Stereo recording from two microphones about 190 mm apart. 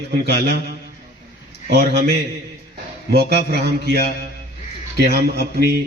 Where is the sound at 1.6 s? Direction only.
60° right (ahead or behind).